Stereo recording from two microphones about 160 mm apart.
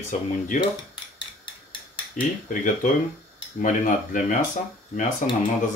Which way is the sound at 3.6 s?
55° left (ahead or behind).